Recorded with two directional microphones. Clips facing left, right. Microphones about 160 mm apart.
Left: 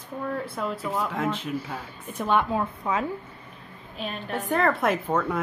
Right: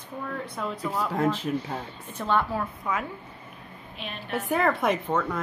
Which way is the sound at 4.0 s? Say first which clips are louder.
Left 1 dB; 40° left (ahead or behind).